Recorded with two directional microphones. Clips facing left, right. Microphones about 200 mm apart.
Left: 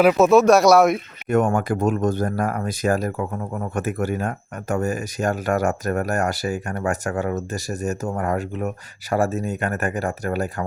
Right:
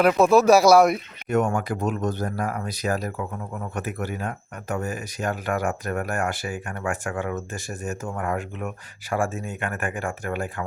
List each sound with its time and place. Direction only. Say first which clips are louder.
0.0 s speech: left 3 dB; centre (ahead or behind)
1.3 s speech: left 4 dB; 50° left (ahead or behind)